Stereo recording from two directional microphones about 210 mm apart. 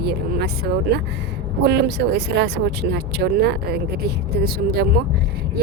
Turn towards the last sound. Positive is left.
turn(degrees=-50)  # may be behind; listen again after turning